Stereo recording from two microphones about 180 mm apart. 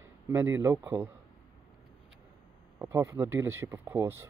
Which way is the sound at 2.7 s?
15° right (ahead or behind).